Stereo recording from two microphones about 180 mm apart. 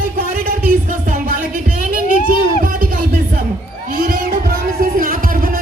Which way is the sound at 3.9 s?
50° right (ahead or behind).